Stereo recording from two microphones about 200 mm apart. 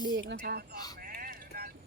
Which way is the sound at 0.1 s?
60° right (ahead or behind).